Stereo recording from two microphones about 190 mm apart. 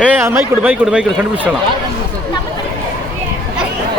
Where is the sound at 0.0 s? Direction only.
10° right (ahead or behind).